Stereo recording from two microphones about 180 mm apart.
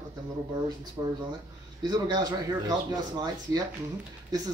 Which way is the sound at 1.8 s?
25° right (ahead or behind).